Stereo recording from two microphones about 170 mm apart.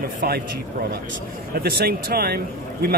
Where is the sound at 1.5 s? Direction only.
60° right (ahead or behind).